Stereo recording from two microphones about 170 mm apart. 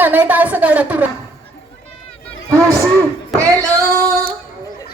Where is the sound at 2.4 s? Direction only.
20° right (ahead or behind).